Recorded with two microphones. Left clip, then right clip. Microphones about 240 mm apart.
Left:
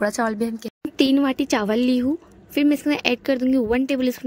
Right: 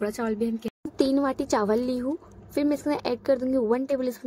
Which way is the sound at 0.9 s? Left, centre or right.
Left.